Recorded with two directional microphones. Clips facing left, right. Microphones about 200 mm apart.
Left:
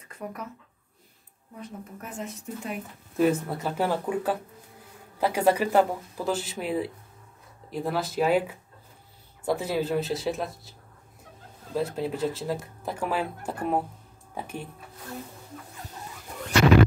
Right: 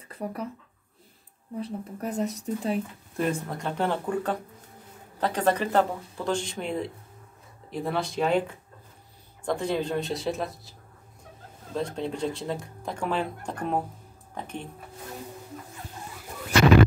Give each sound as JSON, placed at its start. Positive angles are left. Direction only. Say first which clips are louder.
{"t": 0.1, "sound": "speech", "louder": "right 4 dB", "side_deg": -30}
{"t": 1.6, "sound": "speech", "louder": "right 6 dB", "side_deg": -35}
{"t": 3.2, "sound": "speech", "louder": "left 5 dB", "side_deg": 5}
{"t": 11.7, "sound": "speech", "louder": "left 2 dB", "side_deg": 5}